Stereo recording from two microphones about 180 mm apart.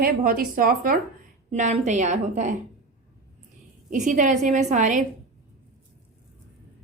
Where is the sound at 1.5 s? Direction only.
40° right (ahead or behind).